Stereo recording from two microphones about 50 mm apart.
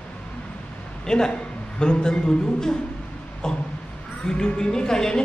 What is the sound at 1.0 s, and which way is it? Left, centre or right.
A man's voice, centre.